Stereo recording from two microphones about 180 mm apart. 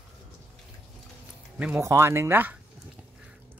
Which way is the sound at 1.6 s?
5° right (ahead or behind).